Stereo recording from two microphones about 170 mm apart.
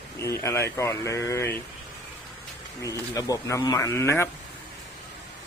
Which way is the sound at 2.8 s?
20° left (ahead or behind).